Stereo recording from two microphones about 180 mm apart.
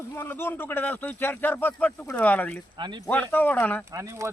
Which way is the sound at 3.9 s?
15° right (ahead or behind).